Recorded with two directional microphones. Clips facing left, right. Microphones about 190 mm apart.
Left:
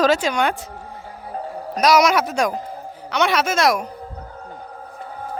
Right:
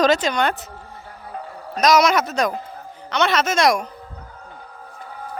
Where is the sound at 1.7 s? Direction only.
10° left (ahead or behind).